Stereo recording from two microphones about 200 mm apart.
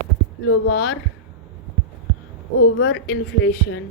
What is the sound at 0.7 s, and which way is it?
Speech, 90° left.